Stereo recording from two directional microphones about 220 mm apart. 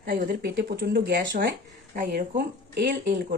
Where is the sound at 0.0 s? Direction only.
40° right (ahead or behind).